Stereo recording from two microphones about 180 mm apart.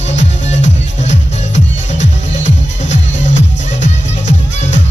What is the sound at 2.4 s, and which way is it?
Music, 80° left.